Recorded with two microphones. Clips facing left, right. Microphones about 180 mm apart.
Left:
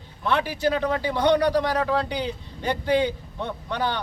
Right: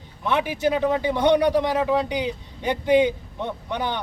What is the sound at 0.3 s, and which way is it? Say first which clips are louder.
Speech: right 1 dB; 15° right (ahead or behind).